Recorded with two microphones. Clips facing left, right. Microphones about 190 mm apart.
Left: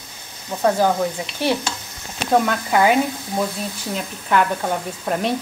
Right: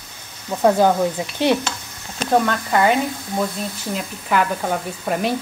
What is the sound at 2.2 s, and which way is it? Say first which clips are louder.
Speech: even; 5° left (ahead or behind).